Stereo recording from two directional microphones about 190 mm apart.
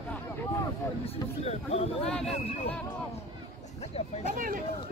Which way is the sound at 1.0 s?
30° left (ahead or behind).